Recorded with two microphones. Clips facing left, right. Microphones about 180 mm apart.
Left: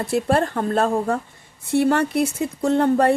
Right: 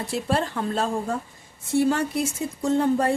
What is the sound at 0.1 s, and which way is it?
A woman's voice, 55° left (ahead or behind).